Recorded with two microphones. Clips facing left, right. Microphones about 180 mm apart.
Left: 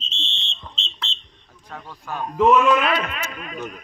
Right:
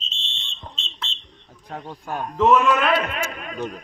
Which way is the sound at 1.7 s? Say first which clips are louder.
Right 3 dB; 30° right (ahead or behind).